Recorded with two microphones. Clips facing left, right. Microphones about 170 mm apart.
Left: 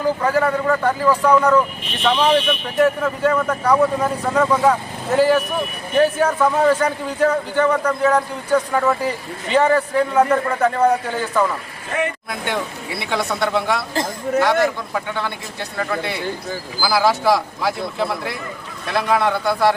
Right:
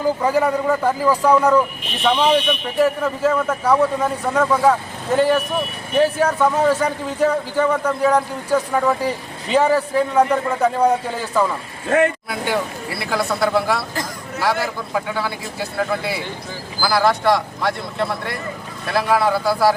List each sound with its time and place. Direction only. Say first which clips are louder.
0.2 s a man's voice: right 1 dB; 15° right (ahead or behind)